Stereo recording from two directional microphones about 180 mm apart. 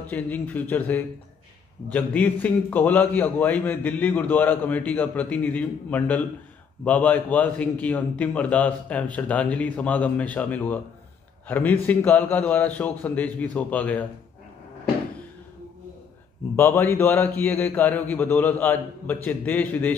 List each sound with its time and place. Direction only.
0.0 s a man's voice: 10° left (ahead or behind)
16.5 s a man's voice: 15° left (ahead or behind)